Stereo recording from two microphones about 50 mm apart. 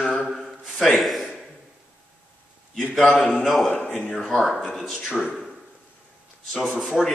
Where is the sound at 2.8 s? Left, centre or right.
Left.